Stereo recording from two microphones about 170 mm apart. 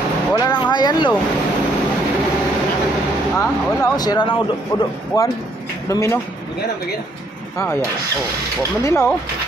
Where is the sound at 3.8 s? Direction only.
25° left (ahead or behind).